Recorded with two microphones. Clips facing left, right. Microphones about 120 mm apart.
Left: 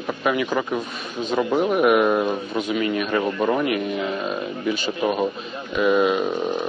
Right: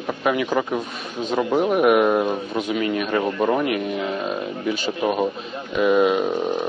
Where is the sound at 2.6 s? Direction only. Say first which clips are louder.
Even; 50° right (ahead or behind).